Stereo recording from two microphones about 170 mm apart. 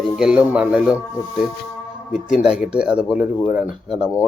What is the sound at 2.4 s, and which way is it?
Speech, 5° right (ahead or behind).